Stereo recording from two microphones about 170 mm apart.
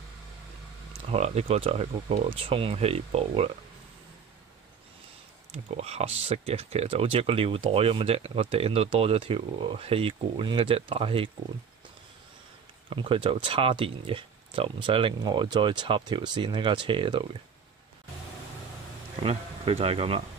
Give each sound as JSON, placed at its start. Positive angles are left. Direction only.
{"t": 1.1, "sound": "speech", "side_deg": -40}
{"t": 5.5, "sound": "speech", "side_deg": -40}
{"t": 12.9, "sound": "speech", "side_deg": -30}
{"t": 19.2, "sound": "speech", "side_deg": -35}